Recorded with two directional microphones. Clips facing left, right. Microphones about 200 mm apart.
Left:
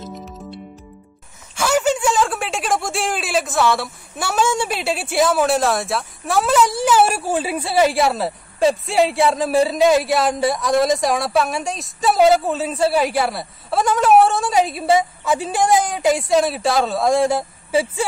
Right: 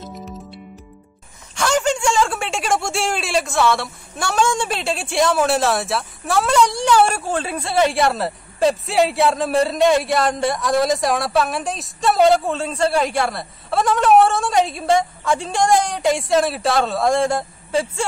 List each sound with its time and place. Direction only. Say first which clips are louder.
0.0 s music: left 1 dB; centre (ahead or behind)
1.5 s speech: left 1 dB; 5° left (ahead or behind)